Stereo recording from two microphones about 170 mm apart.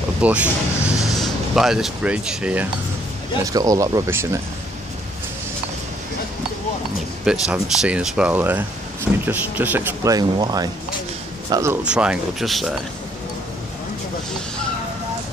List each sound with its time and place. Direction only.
0.2 s speech: 5° right (ahead or behind)
3.4 s speech: 20° right (ahead or behind)
7.2 s speech: 5° right (ahead or behind)
11.8 s speech: 5° right (ahead or behind)